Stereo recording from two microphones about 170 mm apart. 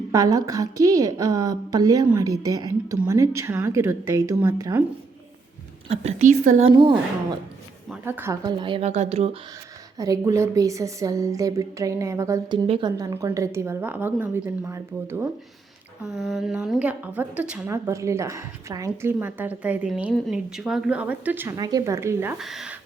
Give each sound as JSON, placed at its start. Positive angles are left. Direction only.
{"t": 0.1, "sound": "a woman's voice", "side_deg": -20}
{"t": 5.9, "sound": "speech", "side_deg": -40}
{"t": 6.7, "sound": "a woman's voice", "side_deg": -30}
{"t": 7.9, "sound": "a woman's voice", "side_deg": -10}
{"t": 8.6, "sound": "speech", "side_deg": -35}
{"t": 10.0, "sound": "a woman's voice", "side_deg": -20}
{"t": 12.6, "sound": "speech", "side_deg": -35}
{"t": 13.0, "sound": "a woman's voice", "side_deg": -20}
{"t": 16.0, "sound": "a woman's voice", "side_deg": 0}
{"t": 17.7, "sound": "a woman's voice", "side_deg": -15}
{"t": 22.4, "sound": "speech", "side_deg": 0}